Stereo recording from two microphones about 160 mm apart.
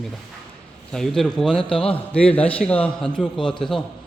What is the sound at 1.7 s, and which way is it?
Speech, 35° left (ahead or behind).